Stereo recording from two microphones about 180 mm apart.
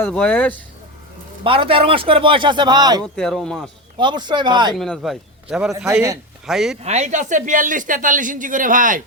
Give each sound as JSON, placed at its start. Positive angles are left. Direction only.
{"t": 0.0, "sound": "speech", "side_deg": 5}
{"t": 1.5, "sound": "speech", "side_deg": -30}
{"t": 3.0, "sound": "speech", "side_deg": 5}
{"t": 3.9, "sound": "speech", "side_deg": -25}
{"t": 4.8, "sound": "a man's voice", "side_deg": 0}
{"t": 5.9, "sound": "a man's voice", "side_deg": -15}
{"t": 6.4, "sound": "speech", "side_deg": 0}
{"t": 6.8, "sound": "speech", "side_deg": -40}